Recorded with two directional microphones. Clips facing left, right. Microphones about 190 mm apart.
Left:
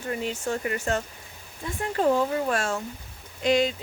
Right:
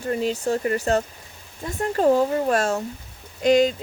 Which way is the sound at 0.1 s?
35° right (ahead or behind).